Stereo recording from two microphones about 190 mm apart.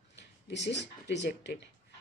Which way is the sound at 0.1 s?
65° left (ahead or behind).